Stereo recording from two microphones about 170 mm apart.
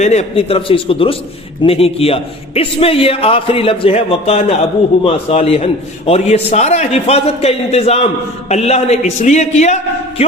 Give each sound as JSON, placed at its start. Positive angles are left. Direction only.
{"t": 0.0, "sound": "a man's voice", "side_deg": 40}